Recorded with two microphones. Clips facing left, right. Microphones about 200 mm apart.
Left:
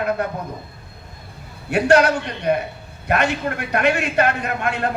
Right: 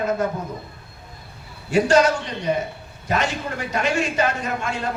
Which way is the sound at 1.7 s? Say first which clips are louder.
Left 1 dB; 60° left (ahead or behind).